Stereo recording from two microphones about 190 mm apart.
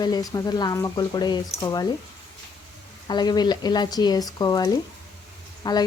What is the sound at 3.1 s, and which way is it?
A woman's voice, 20° left (ahead or behind).